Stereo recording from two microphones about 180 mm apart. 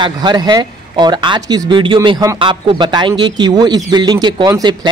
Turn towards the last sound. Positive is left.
turn(degrees=-20)  # may be behind; listen again after turning